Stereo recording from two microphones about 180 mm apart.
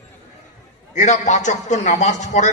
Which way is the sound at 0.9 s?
40° left (ahead or behind).